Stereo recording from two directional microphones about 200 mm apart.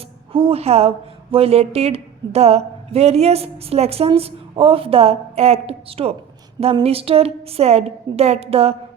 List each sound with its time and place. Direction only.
0.3 s speech: 30° right (ahead or behind)